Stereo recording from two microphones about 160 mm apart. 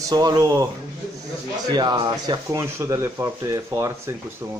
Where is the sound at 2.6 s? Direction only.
20° right (ahead or behind).